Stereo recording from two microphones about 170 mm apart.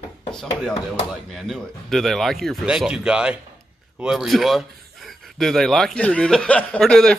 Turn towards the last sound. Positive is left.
turn(degrees=5)  # may be behind; listen again after turning